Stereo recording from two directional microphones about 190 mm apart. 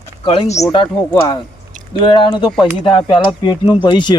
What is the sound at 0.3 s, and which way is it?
Speech, 30° left (ahead or behind).